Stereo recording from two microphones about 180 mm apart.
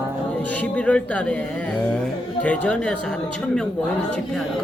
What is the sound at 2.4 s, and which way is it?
Speech, 5° left (ahead or behind).